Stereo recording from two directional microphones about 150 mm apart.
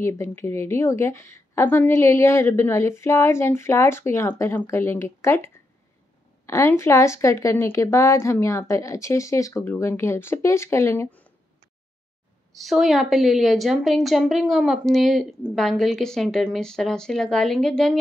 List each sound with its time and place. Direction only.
0.0 s a woman's voice: 15° left (ahead or behind)
12.5 s a woman's voice: centre (ahead or behind)